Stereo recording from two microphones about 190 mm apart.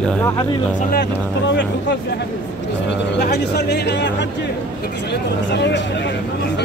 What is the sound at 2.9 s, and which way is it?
Speech, 60° left (ahead or behind).